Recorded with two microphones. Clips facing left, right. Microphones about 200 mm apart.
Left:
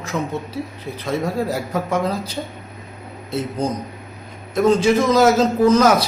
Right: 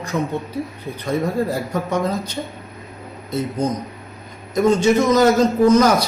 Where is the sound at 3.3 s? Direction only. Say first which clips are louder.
Right 1 dB; 30° left (ahead or behind).